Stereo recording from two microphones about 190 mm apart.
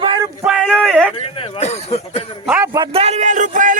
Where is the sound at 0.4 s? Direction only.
Centre (ahead or behind).